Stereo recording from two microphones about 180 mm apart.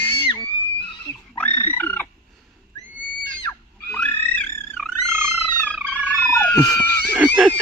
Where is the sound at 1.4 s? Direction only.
10° left (ahead or behind).